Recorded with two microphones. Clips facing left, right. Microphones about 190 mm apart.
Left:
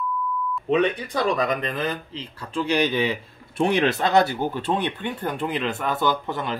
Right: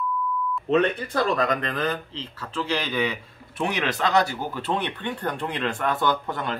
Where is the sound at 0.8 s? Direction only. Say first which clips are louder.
Left 1 dB; 5° right (ahead or behind); by 4.3 s 30° left (ahead or behind).